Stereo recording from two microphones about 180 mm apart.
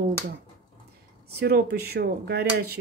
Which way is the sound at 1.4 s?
60° right (ahead or behind).